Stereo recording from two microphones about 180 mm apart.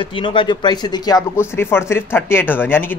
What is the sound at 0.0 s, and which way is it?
Speech, 30° left (ahead or behind).